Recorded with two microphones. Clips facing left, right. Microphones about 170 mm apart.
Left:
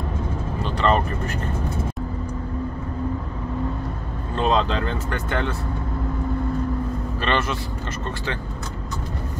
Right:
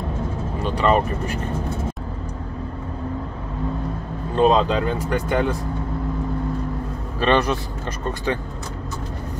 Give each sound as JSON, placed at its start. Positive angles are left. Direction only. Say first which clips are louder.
{"t": 0.6, "sound": "speech", "louder": "right 2 dB", "side_deg": -10}
{"t": 4.4, "sound": "speech", "louder": "right 4 dB", "side_deg": -10}
{"t": 7.2, "sound": "speech", "louder": "right 6 dB", "side_deg": -15}